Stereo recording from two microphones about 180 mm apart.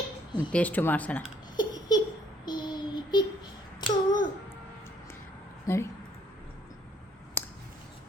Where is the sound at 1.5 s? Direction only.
20° left (ahead or behind).